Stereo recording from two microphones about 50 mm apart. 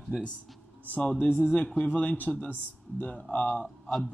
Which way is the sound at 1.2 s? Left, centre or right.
Left.